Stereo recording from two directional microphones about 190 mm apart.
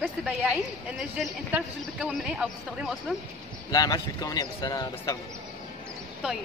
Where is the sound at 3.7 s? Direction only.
20° left (ahead or behind).